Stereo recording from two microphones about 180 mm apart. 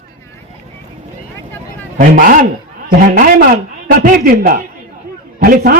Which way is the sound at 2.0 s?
50° right (ahead or behind).